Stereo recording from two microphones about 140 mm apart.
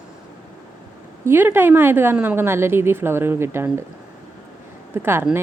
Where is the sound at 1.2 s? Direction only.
15° right (ahead or behind).